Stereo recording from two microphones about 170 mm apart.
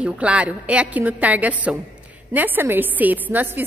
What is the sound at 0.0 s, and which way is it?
A woman's voice, 5° right (ahead or behind).